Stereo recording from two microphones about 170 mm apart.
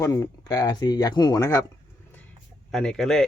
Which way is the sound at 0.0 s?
20° left (ahead or behind).